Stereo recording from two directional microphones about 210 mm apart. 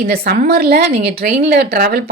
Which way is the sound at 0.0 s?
45° right (ahead or behind).